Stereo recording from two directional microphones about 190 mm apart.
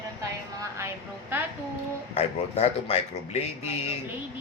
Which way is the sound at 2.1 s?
35° left (ahead or behind).